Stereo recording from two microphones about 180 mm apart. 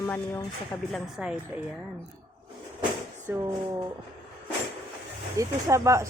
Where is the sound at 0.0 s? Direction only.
10° left (ahead or behind).